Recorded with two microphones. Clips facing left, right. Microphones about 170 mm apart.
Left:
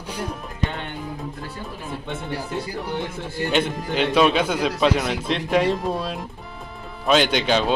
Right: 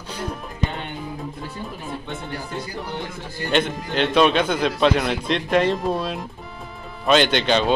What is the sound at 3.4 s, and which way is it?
Speech, 5° left (ahead or behind).